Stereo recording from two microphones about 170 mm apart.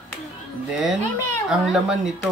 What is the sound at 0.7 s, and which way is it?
Speech, 5° right (ahead or behind).